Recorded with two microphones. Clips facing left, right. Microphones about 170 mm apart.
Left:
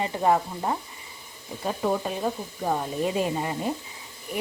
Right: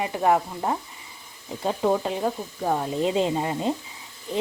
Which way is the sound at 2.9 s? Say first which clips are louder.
Right 3 dB; 20° right (ahead or behind).